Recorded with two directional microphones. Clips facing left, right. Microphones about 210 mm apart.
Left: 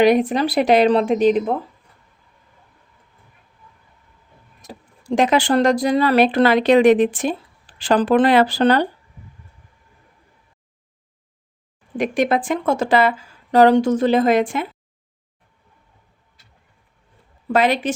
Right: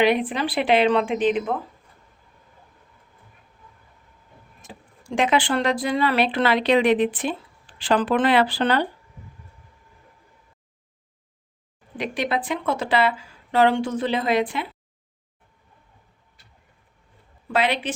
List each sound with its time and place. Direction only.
0.0 s speech: 40° left (ahead or behind)
4.6 s speech: 40° left (ahead or behind)
11.9 s a woman's voice: 45° left (ahead or behind)
17.5 s a woman's voice: 45° left (ahead or behind)